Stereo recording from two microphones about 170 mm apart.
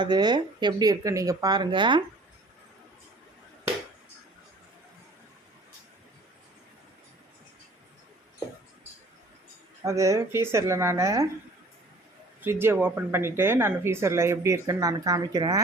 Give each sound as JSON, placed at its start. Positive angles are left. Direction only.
{"t": 0.0, "sound": "speech", "side_deg": -25}
{"t": 9.8, "sound": "speech", "side_deg": -20}
{"t": 12.4, "sound": "speech", "side_deg": -15}